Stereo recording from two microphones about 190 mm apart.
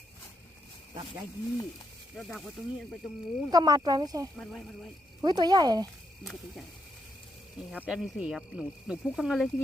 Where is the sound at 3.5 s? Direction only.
20° right (ahead or behind).